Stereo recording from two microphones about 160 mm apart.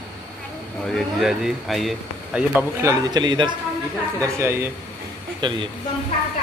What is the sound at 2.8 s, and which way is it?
Speech, 20° right (ahead or behind).